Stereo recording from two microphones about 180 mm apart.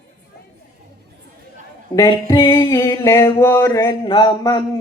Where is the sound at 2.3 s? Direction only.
25° left (ahead or behind).